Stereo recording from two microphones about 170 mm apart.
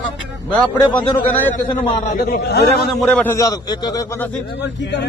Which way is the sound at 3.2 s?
20° left (ahead or behind).